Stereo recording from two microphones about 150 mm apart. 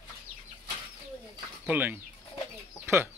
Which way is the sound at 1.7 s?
10° right (ahead or behind).